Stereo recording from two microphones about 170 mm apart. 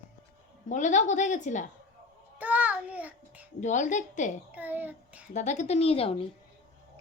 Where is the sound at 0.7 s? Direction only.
45° left (ahead or behind).